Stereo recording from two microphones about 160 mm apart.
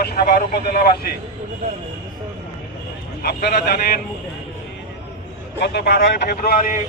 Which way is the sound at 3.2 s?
85° left.